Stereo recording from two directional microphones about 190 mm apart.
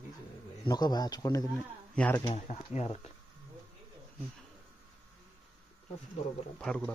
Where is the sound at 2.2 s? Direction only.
35° left (ahead or behind).